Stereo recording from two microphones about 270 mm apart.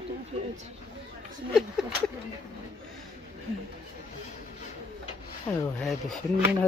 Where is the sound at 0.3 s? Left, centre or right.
Right.